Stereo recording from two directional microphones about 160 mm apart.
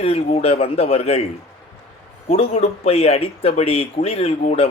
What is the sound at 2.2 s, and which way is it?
Speech, 35° left (ahead or behind).